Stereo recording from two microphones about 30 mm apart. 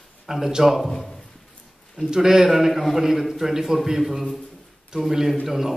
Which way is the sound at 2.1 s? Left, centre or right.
Centre.